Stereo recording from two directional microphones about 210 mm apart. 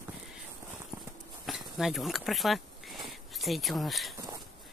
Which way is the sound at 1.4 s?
Centre (ahead or behind).